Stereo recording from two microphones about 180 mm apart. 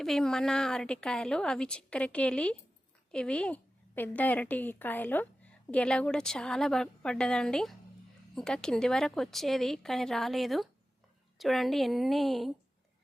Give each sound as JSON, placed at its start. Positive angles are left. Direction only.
{"t": 0.0, "sound": "a woman's voice", "side_deg": 0}